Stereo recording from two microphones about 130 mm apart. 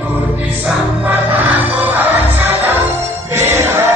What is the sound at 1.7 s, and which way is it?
Music, 15° right (ahead or behind).